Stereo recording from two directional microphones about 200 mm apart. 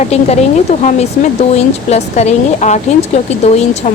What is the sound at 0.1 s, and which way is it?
Speech, 30° left (ahead or behind).